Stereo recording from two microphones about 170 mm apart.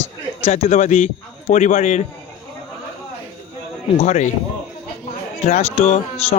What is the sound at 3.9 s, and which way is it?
Speech, 45° left (ahead or behind).